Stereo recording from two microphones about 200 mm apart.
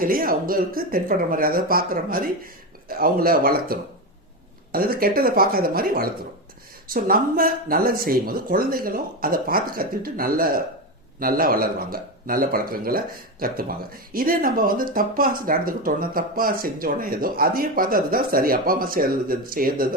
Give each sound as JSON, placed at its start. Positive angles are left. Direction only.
{"t": 0.0, "sound": "speech", "side_deg": -45}